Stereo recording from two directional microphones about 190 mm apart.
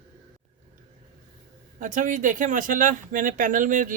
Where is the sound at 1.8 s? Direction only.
40° right (ahead or behind).